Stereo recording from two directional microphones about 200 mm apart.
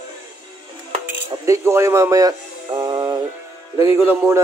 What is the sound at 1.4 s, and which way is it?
Music, 15° right (ahead or behind).